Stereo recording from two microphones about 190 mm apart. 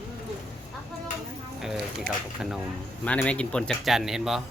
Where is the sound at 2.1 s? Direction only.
50° right (ahead or behind).